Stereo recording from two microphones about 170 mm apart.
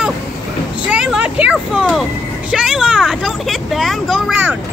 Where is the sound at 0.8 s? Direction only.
5° right (ahead or behind).